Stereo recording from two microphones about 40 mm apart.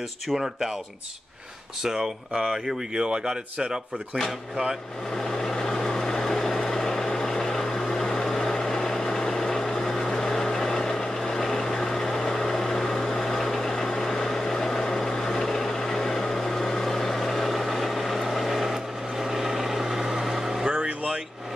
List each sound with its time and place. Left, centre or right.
0.3 s speech: centre
1.8 s speech: centre
5.2 s vehicle: centre
20.7 s vehicle: right